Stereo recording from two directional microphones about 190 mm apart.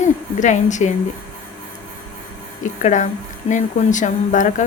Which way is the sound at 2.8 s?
40° left (ahead or behind).